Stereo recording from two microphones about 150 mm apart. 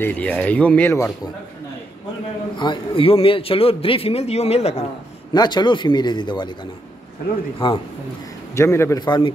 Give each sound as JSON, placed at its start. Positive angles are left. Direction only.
{"t": 0.0, "sound": "speech", "side_deg": 10}
{"t": 2.5, "sound": "a man's voice", "side_deg": 30}
{"t": 5.3, "sound": "speech", "side_deg": 30}
{"t": 7.5, "sound": "a man's voice", "side_deg": 35}
{"t": 8.5, "sound": "speech", "side_deg": 15}
{"t": 9.0, "sound": "speech", "side_deg": 30}